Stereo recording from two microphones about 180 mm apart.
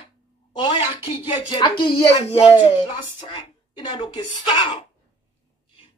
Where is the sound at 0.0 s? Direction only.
30° left (ahead or behind).